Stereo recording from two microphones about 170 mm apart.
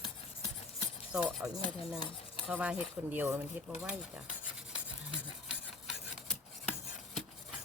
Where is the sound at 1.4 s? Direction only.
5° right (ahead or behind).